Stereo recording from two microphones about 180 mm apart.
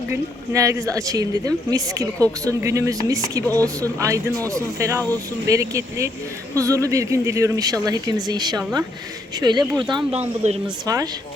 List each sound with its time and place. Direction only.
0.1 s speech: 15° right (ahead or behind)
10.2 s speech: 35° right (ahead or behind)
10.8 s speech: 20° right (ahead or behind)